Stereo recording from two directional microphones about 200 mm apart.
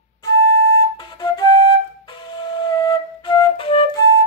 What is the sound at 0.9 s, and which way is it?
Flute, 20° left (ahead or behind).